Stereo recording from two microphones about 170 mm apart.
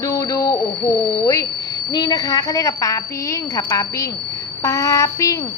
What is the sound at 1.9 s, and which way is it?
Speech, 20° left (ahead or behind).